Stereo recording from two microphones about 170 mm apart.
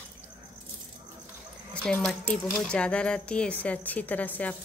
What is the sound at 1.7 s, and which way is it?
Speech, 5° left (ahead or behind).